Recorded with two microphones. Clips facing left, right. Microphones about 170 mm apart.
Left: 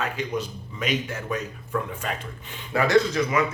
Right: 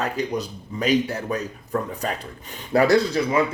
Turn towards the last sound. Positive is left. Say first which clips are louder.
# right 2 dB
turn(degrees=-35)  # may be behind; listen again after turning